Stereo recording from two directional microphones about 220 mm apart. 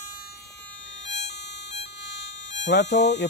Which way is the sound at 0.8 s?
55° left (ahead or behind).